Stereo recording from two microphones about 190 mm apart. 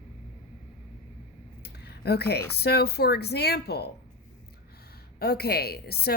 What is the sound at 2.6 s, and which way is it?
A woman's voice, 55° left (ahead or behind).